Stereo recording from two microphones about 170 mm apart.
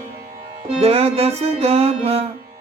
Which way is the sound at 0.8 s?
35° right (ahead or behind).